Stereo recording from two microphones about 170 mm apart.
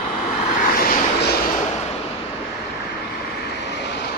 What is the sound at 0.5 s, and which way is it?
Vehicle, 55° left (ahead or behind).